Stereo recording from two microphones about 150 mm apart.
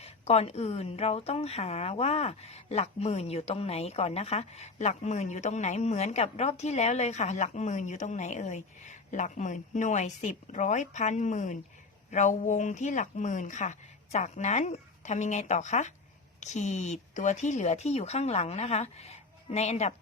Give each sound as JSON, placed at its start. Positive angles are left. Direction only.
{"t": 0.0, "sound": "speech", "side_deg": 45}